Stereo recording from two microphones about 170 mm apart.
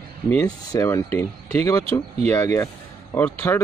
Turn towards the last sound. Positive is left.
turn(degrees=10)  # may be behind; listen again after turning